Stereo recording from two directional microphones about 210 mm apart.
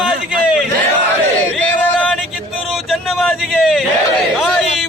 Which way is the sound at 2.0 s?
Centre (ahead or behind).